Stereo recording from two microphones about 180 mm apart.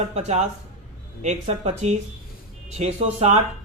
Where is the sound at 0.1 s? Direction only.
40° right (ahead or behind).